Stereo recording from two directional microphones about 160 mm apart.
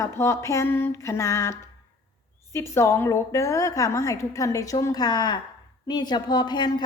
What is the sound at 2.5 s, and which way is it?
A woman's voice, 15° left (ahead or behind).